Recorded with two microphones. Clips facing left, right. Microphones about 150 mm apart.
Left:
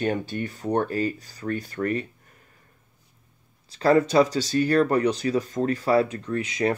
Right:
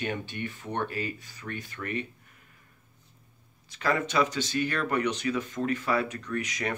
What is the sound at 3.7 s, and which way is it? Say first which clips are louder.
Speech: left 9 dB; 35° left (ahead or behind).